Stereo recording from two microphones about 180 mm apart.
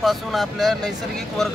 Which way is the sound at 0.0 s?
Centre (ahead or behind).